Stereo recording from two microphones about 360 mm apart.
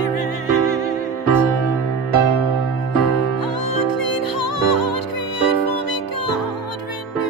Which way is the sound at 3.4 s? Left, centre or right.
Left.